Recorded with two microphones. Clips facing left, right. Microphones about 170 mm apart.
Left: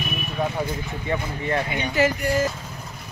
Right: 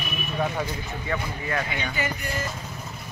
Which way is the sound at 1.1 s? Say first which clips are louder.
Left 4 dB; 25° left (ahead or behind).